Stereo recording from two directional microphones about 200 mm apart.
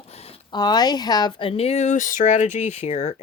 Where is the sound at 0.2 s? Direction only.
25° left (ahead or behind).